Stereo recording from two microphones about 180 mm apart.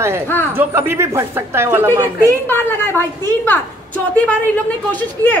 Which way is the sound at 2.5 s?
10° left (ahead or behind).